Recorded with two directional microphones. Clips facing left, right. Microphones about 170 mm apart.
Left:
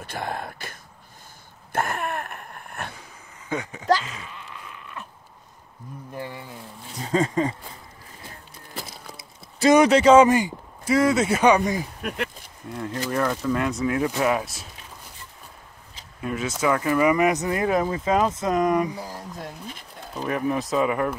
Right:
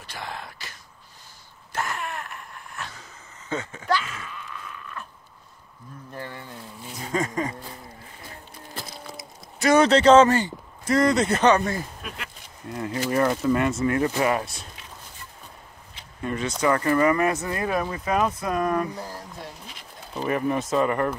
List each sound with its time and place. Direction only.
0.0 s a sound: 50° left (ahead or behind)
3.4 s speech: 15° left (ahead or behind)
4.0 s groan: 20° left (ahead or behind)
6.1 s speech: 10° left (ahead or behind)
7.1 s speech: 30° left (ahead or behind)
9.8 s speech: 10° left (ahead or behind)
12.0 s speech: 60° left (ahead or behind)
12.6 s speech: centre (ahead or behind)
16.2 s speech: 5° left (ahead or behind)
20.2 s speech: centre (ahead or behind)